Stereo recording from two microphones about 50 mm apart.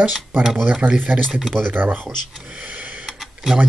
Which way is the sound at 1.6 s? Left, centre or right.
Right.